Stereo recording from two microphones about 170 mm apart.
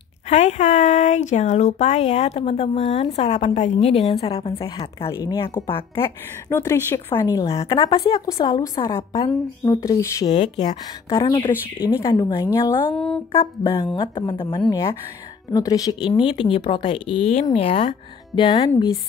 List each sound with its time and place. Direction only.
0.3 s speech: 40° left (ahead or behind)
4.1 s a woman's voice: 20° left (ahead or behind)
5.0 s speech: 15° left (ahead or behind)
5.8 s speech: 30° left (ahead or behind)
6.5 s speech: 15° left (ahead or behind)
7.4 s a woman's voice: 35° left (ahead or behind)
12.7 s speech: 10° left (ahead or behind)
13.3 s speech: 30° left (ahead or behind)
14.7 s a woman's voice: 20° left (ahead or behind); by 17.9 s 40° left (ahead or behind)
18.3 s a woman's voice: 25° left (ahead or behind)